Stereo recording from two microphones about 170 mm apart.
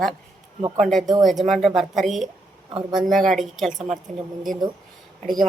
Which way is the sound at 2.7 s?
25° right (ahead or behind).